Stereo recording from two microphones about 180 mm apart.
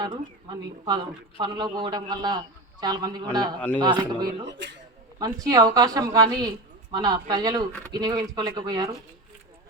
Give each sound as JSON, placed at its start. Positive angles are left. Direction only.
{"t": 0.0, "sound": "speech", "side_deg": -25}
{"t": 4.4, "sound": "speech", "side_deg": -75}
{"t": 5.2, "sound": "speech", "side_deg": -20}